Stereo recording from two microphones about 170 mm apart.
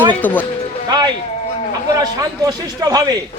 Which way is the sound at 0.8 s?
25° right (ahead or behind).